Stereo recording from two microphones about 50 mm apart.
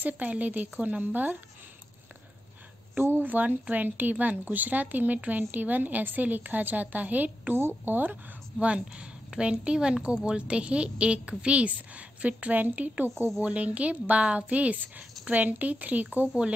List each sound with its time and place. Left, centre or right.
0.0 s a woman's voice: right
3.0 s a woman's voice: right
3.3 s a woman's voice: right
7.5 s a woman's voice: right
8.5 s a woman's voice: right